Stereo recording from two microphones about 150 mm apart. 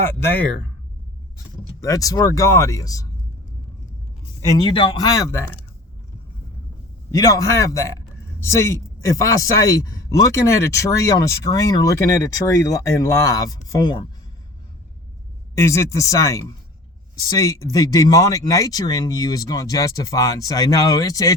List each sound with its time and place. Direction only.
0.0 s speech: 15° left (ahead or behind)
1.8 s speech: 25° left (ahead or behind)
4.4 s speech: 30° left (ahead or behind)
7.1 s speech: 20° left (ahead or behind)
15.5 s speech: 20° left (ahead or behind)